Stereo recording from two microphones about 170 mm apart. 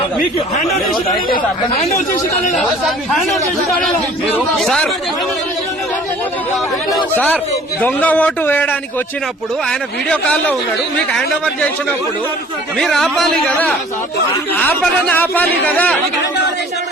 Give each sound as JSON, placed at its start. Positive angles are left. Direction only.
{"t": 3.1, "sound": "a man's voice", "side_deg": 0}
{"t": 7.8, "sound": "a man's voice", "side_deg": 10}
{"t": 12.7, "sound": "a man's voice", "side_deg": 0}